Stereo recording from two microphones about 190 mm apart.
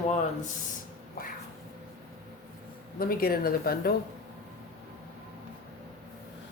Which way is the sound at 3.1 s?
50° left (ahead or behind).